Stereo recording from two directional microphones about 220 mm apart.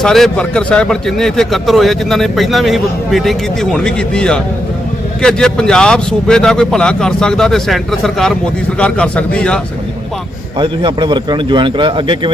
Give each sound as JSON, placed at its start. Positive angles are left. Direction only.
{"t": 0.0, "sound": "a man's voice", "side_deg": 0}
{"t": 10.6, "sound": "a man's voice", "side_deg": -20}